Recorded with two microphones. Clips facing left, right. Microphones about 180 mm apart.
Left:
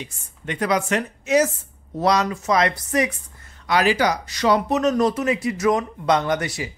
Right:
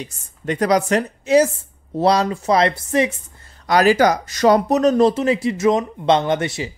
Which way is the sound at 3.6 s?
40° right (ahead or behind).